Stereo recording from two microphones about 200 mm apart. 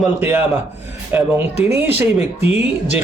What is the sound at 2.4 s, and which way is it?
Speech, 30° left (ahead or behind).